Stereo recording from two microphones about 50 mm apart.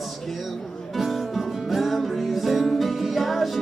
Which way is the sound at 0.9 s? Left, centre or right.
Centre.